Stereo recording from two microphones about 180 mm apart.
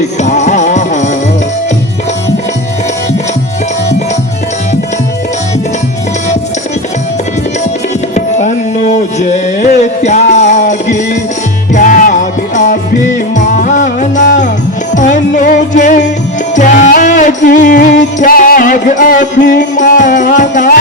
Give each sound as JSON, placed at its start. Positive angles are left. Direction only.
{"t": 0.2, "sound": "music", "side_deg": 40}
{"t": 8.1, "sound": "tabla", "side_deg": 40}
{"t": 9.1, "sound": "music", "side_deg": 40}